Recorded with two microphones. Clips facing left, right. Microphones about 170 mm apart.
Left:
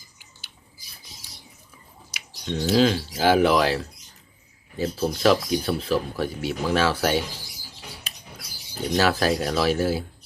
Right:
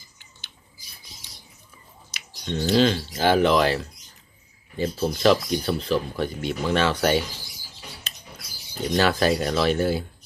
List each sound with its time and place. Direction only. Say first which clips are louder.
2.0 s speech: even; 5° left (ahead or behind)
8.1 s a sound: even; 10° left (ahead or behind)
8.9 s speech: right 1 dB; 5° left (ahead or behind)